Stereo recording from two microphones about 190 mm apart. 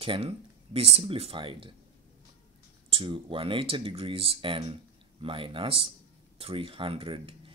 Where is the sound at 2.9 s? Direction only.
25° right (ahead or behind).